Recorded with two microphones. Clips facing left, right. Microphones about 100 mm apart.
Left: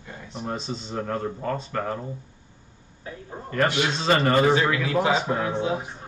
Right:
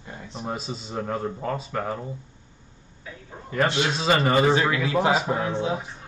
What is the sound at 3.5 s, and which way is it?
Speech, 5° right (ahead or behind).